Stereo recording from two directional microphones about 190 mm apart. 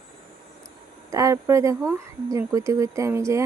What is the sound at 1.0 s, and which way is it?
Speech, 15° right (ahead or behind).